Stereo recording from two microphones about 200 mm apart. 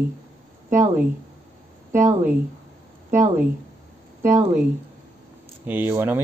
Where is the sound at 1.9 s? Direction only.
35° right (ahead or behind).